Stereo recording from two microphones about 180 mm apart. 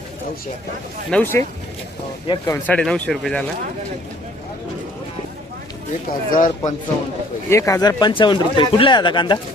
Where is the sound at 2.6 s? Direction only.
5° left (ahead or behind).